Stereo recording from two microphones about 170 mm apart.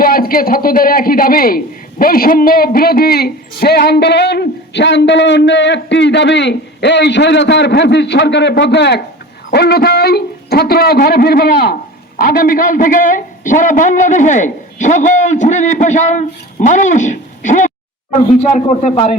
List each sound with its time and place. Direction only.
0.0 s a man's voice: 60° left (ahead or behind); by 9.0 s 85° left
9.5 s speech: 75° left (ahead or behind); by 19.1 s 40° left (ahead or behind)